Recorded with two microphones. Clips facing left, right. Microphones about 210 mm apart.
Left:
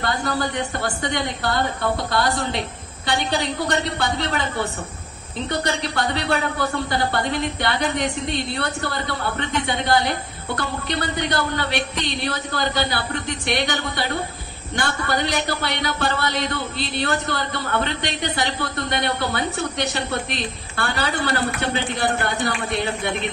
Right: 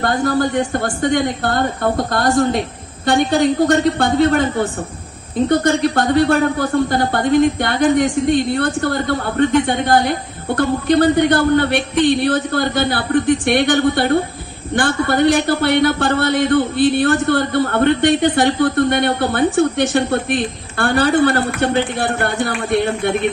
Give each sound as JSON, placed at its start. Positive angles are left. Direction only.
{"t": 0.0, "sound": "speech", "side_deg": -50}